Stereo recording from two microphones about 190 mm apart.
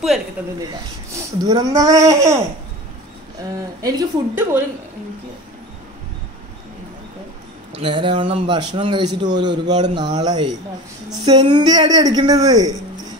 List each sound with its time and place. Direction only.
1.1 s speech: 20° right (ahead or behind)
3.8 s a man's voice: 20° right (ahead or behind)
7.7 s a man's voice: 25° right (ahead or behind)